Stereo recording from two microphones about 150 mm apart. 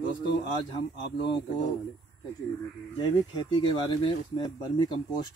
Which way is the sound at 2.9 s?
30° left (ahead or behind).